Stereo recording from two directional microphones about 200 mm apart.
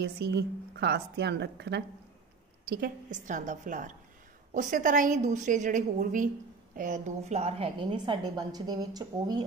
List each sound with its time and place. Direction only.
0.0 s a woman's voice: 55° right (ahead or behind)
2.7 s a woman's voice: 45° right (ahead or behind); by 9.4 s 20° right (ahead or behind)